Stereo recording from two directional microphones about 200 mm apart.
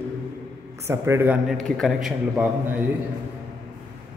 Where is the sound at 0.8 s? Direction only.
15° right (ahead or behind).